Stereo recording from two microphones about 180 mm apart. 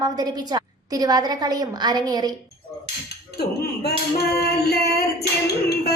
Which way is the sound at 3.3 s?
65° left (ahead or behind).